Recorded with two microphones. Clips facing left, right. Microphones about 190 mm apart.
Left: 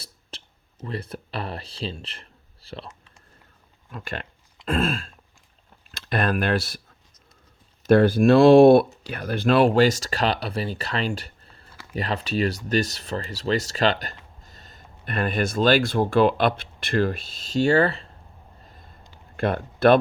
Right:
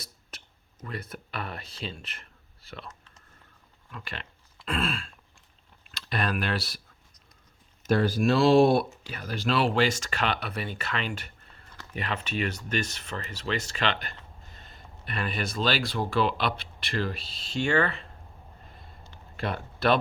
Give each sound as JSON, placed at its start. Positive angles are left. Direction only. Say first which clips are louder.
{"t": 0.0, "sound": "speech", "louder": "left 3 dB", "side_deg": 30}
{"t": 3.9, "sound": "throat clearing", "louder": "left 7 dB", "side_deg": 45}
{"t": 5.9, "sound": "speech", "louder": "left 6 dB", "side_deg": 50}
{"t": 7.9, "sound": "speech", "louder": "left 8 dB", "side_deg": 60}
{"t": 19.4, "sound": "speech", "louder": "left 9 dB", "side_deg": 50}